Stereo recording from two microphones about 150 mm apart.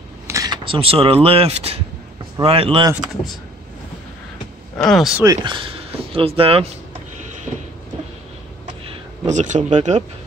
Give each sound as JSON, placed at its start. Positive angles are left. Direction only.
{"t": 0.3, "sound": "a sound", "side_deg": -20}
{"t": 0.7, "sound": "speech", "side_deg": -40}
{"t": 4.7, "sound": "speech", "side_deg": 0}
{"t": 5.2, "sound": "speech", "side_deg": -30}
{"t": 9.2, "sound": "speech", "side_deg": -50}